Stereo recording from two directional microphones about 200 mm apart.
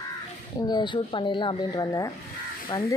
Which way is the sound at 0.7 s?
20° left (ahead or behind).